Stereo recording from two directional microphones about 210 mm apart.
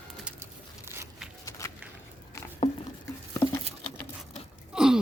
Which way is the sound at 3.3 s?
15° left (ahead or behind).